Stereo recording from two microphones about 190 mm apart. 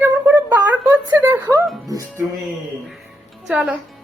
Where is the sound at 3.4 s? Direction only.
5° right (ahead or behind).